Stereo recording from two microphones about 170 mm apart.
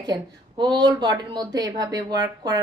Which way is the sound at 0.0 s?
25° right (ahead or behind).